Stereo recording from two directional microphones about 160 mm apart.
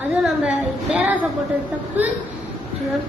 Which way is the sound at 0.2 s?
Centre (ahead or behind).